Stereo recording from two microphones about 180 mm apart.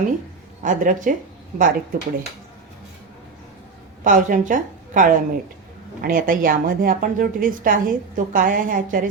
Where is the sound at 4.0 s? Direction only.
45° right (ahead or behind).